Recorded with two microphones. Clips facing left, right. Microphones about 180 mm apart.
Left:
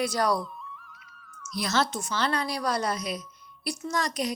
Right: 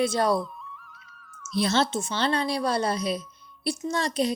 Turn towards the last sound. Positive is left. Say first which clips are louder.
# right 3 dB
turn(degrees=-30)  # may be behind; listen again after turning